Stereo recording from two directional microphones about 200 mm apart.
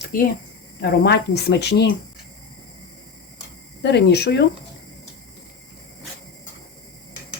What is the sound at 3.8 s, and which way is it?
Speech, 60° left (ahead or behind).